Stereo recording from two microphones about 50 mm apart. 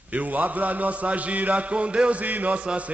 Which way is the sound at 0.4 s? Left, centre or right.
Right.